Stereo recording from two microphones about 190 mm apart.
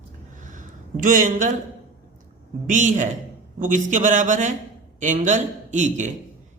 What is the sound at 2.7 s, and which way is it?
Speech, 40° right (ahead or behind).